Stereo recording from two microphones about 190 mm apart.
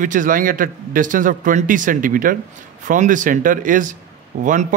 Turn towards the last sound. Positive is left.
turn(degrees=-45)  # may be behind; listen again after turning